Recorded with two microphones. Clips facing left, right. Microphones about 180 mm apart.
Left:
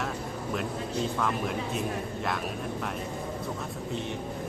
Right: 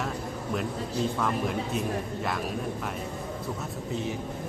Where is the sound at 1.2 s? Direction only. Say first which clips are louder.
Right 1 dB; centre (ahead or behind).